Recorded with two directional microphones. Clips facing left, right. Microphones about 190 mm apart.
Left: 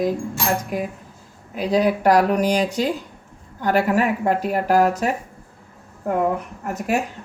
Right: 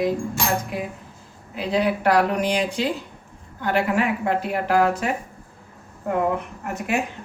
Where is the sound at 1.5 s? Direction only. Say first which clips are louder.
Left 3 dB; 40° left (ahead or behind).